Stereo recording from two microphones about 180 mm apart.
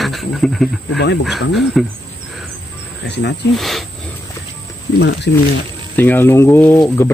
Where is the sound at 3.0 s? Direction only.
70° left (ahead or behind).